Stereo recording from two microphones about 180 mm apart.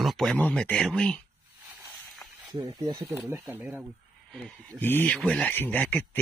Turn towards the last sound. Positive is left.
turn(degrees=10)  # may be behind; listen again after turning